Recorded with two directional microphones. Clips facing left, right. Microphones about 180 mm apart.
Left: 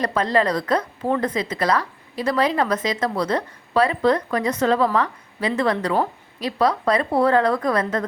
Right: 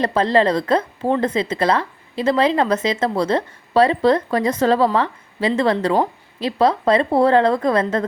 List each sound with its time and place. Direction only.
0.0 s speech: 30° right (ahead or behind)